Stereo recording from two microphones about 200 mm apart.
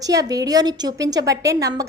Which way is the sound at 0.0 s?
20° right (ahead or behind).